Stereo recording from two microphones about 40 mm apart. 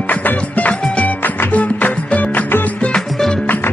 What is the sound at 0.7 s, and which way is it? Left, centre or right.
Music, left.